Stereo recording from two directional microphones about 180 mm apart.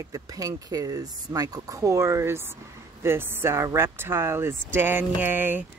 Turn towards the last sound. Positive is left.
turn(degrees=-10)  # may be behind; listen again after turning